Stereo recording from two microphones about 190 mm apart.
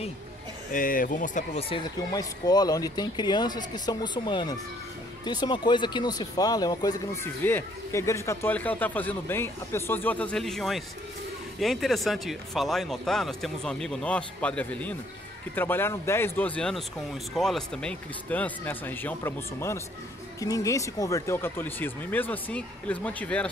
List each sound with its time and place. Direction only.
0.7 s speech: 45° left (ahead or behind)
1.6 s speech: 25° left (ahead or behind); by 23.5 s 5° left (ahead or behind)